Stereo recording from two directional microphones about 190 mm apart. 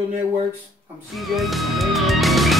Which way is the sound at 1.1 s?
Centre (ahead or behind).